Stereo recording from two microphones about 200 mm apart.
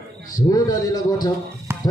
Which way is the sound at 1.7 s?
10° right (ahead or behind).